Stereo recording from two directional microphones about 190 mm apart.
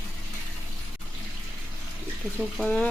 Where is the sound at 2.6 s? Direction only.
5° left (ahead or behind).